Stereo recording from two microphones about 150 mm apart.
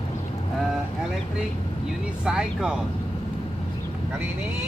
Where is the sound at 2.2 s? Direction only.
5° right (ahead or behind).